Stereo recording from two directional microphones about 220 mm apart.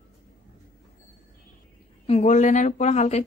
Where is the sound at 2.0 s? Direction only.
30° left (ahead or behind).